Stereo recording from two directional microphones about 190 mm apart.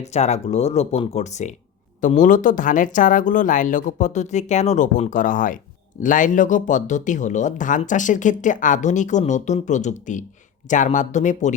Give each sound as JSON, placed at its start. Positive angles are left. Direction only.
{"t": 0.0, "sound": "speech", "side_deg": 35}